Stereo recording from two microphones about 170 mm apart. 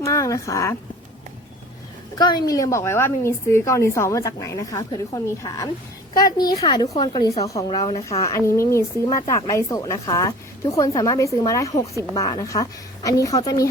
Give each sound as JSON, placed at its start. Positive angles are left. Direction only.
{"t": 0.0, "sound": "speech", "side_deg": 20}
{"t": 2.1, "sound": "speech", "side_deg": 25}